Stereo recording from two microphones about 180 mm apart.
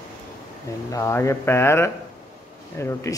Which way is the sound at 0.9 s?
15° left (ahead or behind).